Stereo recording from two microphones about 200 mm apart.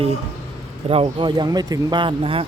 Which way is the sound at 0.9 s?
30° right (ahead or behind).